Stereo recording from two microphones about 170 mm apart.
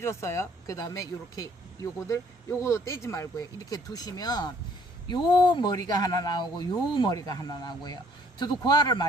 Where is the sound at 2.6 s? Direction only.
15° left (ahead or behind).